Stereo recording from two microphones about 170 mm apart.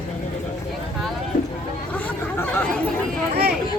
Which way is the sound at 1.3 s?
50° left (ahead or behind).